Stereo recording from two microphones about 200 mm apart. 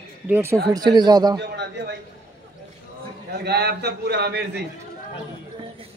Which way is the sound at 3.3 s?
55° right (ahead or behind).